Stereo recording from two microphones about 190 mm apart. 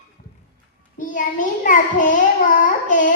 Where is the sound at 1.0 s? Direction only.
40° left (ahead or behind).